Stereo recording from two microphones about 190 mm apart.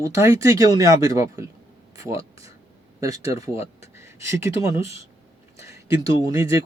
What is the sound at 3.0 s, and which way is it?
Speech, 15° right (ahead or behind).